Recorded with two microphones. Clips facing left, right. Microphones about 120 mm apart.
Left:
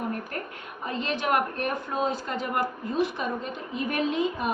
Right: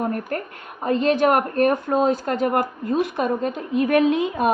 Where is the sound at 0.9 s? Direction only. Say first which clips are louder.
Right 10 dB; 50° right (ahead or behind).